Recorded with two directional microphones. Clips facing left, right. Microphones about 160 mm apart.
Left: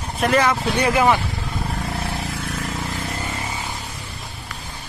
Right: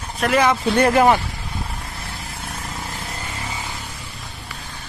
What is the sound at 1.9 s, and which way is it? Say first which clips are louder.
Vehicle: left 8 dB; 80° left.